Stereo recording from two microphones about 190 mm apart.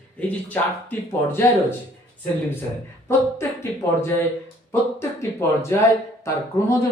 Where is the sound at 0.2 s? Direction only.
10° left (ahead or behind).